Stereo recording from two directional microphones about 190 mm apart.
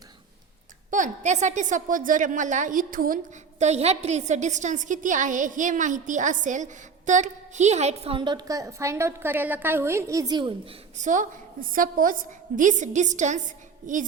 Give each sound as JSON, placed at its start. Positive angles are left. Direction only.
{"t": 0.9, "sound": "a woman's voice", "side_deg": -40}
{"t": 3.6, "sound": "a woman's voice", "side_deg": -35}
{"t": 10.9, "sound": "a woman's voice", "side_deg": -40}